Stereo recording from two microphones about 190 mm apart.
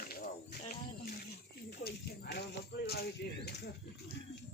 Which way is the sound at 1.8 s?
55° left (ahead or behind).